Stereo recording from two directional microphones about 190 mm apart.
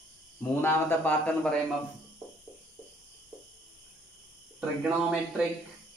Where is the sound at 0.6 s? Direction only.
10° left (ahead or behind).